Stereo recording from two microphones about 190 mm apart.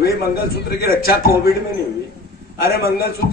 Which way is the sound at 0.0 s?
55° left (ahead or behind).